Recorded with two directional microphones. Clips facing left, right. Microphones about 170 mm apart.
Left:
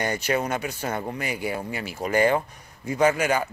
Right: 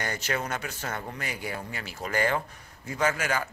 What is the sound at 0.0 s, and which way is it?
Speech, 15° left (ahead or behind).